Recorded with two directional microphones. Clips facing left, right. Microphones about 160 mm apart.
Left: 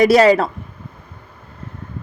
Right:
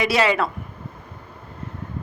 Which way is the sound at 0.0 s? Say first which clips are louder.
Left 9 dB; 40° left (ahead or behind).